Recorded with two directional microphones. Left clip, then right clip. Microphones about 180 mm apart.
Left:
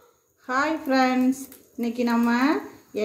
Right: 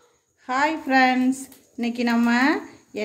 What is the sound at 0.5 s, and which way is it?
A woman's voice, 25° right (ahead or behind).